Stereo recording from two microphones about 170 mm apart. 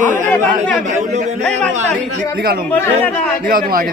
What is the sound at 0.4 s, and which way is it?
Speech, 45° right (ahead or behind).